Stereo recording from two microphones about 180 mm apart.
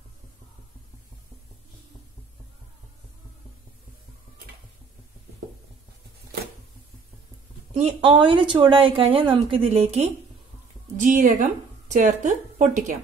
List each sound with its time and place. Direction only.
7.7 s speech: 30° right (ahead or behind)
11.0 s a woman's voice: 45° right (ahead or behind)